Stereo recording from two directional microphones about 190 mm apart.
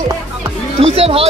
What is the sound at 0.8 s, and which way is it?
Speech, 30° right (ahead or behind).